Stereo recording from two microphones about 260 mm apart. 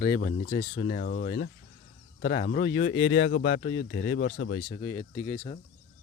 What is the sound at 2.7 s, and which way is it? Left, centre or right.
Speech, left.